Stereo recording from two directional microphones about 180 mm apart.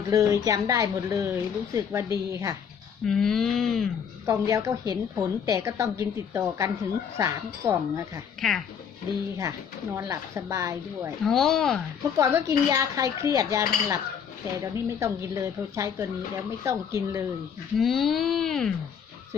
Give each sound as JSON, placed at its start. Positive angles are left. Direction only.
{"t": 0.1, "sound": "speech", "side_deg": -15}
{"t": 3.1, "sound": "speech", "side_deg": 0}
{"t": 4.3, "sound": "speech", "side_deg": -15}
{"t": 8.4, "sound": "speech", "side_deg": 5}
{"t": 9.9, "sound": "speech", "side_deg": -15}
{"t": 11.2, "sound": "speech", "side_deg": 5}
{"t": 12.2, "sound": "speech", "side_deg": -15}
{"t": 17.7, "sound": "speech", "side_deg": 0}